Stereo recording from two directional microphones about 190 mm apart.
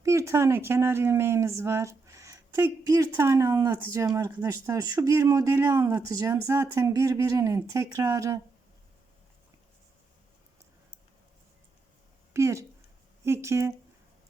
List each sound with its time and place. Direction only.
0.0 s speech: 15° right (ahead or behind)
12.3 s speech: 15° right (ahead or behind)